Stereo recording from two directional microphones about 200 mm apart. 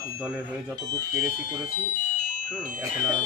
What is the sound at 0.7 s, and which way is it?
Speech, 20° right (ahead or behind).